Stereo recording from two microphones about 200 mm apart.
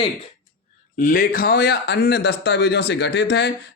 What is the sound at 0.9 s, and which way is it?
Speech, 45° left (ahead or behind).